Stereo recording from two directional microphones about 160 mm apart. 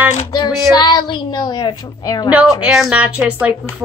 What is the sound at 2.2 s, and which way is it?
A woman's voice, 5° right (ahead or behind).